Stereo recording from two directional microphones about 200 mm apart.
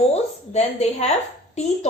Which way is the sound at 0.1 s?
35° left (ahead or behind).